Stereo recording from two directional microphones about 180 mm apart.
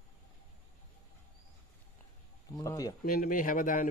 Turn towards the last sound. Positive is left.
turn(degrees=50)  # may be behind; listen again after turning